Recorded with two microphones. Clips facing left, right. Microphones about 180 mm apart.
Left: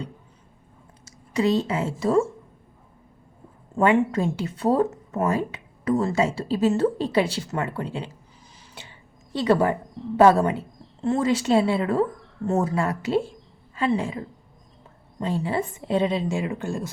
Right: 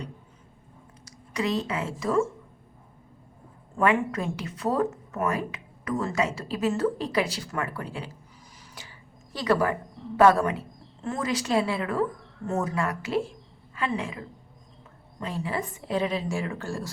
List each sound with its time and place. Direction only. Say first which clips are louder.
1.0 s a woman's voice: left 6 dB; 25° left (ahead or behind)
3.8 s speech: left 4 dB; 25° left (ahead or behind)
9.3 s speech: left 4 dB; 25° left (ahead or behind)